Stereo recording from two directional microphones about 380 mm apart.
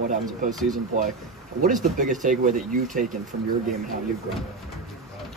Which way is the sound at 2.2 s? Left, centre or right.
Centre.